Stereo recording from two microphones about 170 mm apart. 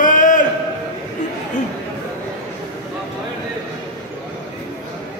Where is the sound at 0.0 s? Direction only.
50° left (ahead or behind).